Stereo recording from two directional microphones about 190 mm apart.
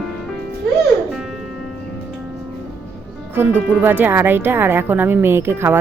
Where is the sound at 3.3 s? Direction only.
10° right (ahead or behind).